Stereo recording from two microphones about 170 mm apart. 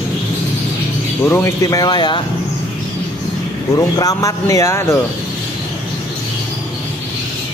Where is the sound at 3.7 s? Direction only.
20° left (ahead or behind).